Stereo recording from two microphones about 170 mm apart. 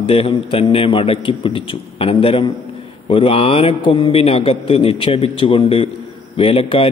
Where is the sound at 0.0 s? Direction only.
35° left (ahead or behind).